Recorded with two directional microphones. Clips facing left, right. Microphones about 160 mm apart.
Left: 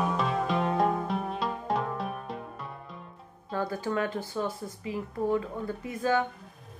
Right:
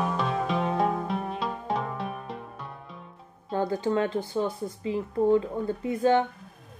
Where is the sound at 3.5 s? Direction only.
20° right (ahead or behind).